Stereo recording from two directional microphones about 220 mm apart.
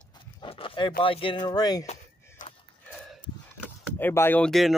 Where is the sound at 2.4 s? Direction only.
35° left (ahead or behind).